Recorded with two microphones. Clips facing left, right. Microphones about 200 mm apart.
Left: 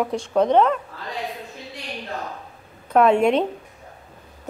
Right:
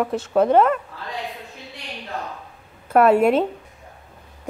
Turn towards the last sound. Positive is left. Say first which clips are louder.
# right 1 dB
turn(degrees=-5)  # may be behind; listen again after turning